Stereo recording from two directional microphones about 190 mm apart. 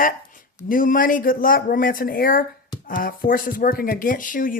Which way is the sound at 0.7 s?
45° left (ahead or behind).